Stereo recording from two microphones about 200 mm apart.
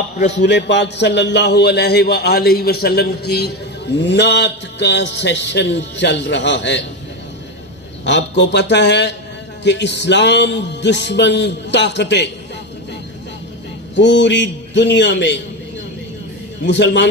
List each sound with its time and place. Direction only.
0.3 s a man's voice: 60° left (ahead or behind)
8.0 s a man's voice: 60° left (ahead or behind)
13.9 s a man's voice: 65° left (ahead or behind)
16.6 s a man's voice: 60° left (ahead or behind)